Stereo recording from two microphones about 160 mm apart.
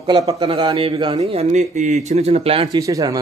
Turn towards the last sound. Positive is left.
turn(degrees=-20)  # may be behind; listen again after turning